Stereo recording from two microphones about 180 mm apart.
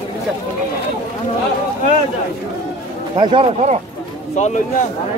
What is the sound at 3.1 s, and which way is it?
Speech, 30° right (ahead or behind).